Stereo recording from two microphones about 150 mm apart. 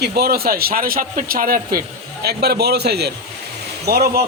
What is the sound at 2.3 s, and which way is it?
A man's voice, 90° right.